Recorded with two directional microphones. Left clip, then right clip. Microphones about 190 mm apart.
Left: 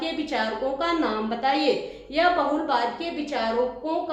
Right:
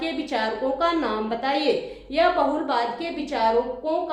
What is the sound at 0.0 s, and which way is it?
A woman's voice, 20° right (ahead or behind).